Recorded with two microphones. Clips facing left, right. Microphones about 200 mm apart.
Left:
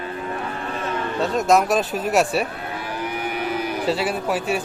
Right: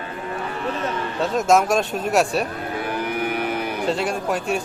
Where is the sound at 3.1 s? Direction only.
55° right (ahead or behind).